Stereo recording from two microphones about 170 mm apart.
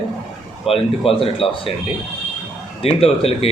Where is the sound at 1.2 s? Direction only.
35° left (ahead or behind).